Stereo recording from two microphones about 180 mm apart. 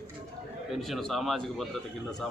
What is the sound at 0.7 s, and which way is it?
Speech, centre (ahead or behind).